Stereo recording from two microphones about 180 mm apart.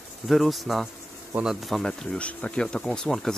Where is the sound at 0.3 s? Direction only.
Centre (ahead or behind).